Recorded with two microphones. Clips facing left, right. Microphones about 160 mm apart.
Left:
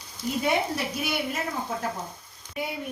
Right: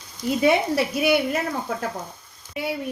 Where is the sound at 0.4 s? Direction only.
85° right.